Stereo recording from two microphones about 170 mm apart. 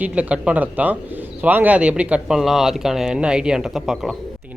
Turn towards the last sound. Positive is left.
turn(degrees=0)  # may be behind; listen again after turning